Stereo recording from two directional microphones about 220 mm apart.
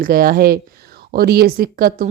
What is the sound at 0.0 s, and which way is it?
Speech, 40° right (ahead or behind).